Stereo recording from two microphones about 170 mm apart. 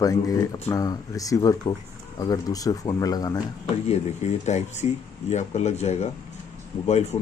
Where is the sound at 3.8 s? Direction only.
40° left (ahead or behind).